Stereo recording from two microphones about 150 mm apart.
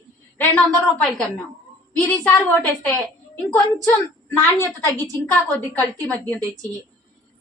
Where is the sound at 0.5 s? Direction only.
5° left (ahead or behind).